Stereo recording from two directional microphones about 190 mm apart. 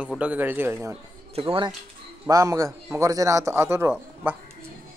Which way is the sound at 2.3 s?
15° right (ahead or behind).